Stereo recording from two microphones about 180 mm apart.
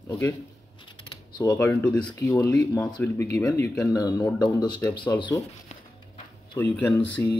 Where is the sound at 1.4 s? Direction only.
15° left (ahead or behind).